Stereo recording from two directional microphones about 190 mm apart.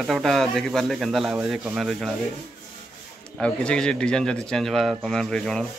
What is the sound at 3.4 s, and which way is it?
A man's voice, 5° left (ahead or behind).